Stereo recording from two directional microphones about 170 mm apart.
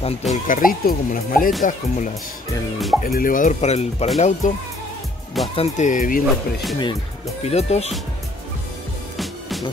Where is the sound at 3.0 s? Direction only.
55° left (ahead or behind).